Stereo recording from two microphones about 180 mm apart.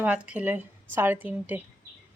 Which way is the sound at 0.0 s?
5° right (ahead or behind).